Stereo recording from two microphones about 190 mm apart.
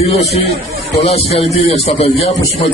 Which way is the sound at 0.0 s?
35° left (ahead or behind).